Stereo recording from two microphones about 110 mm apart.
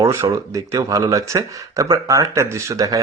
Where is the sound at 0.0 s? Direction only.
25° right (ahead or behind).